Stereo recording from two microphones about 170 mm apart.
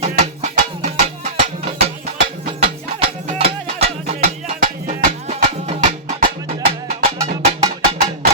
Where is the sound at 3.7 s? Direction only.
35° right (ahead or behind).